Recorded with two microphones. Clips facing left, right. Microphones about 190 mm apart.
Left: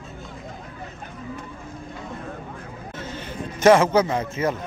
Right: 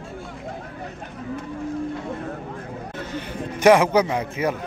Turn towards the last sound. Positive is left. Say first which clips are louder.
# even
turn(degrees=-15)  # may be behind; listen again after turning